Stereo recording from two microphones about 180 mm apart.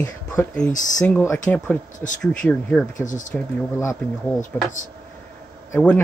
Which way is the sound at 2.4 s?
10° left (ahead or behind).